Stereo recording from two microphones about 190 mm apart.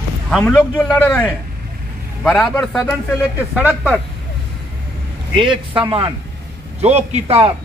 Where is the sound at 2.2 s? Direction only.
Centre (ahead or behind).